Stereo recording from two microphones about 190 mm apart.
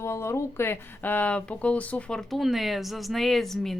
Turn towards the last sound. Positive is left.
turn(degrees=0)  # may be behind; listen again after turning